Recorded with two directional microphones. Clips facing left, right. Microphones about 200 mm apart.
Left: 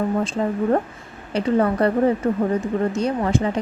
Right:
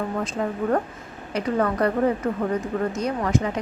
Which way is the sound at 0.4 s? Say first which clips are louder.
Left 2 dB; 25° left (ahead or behind).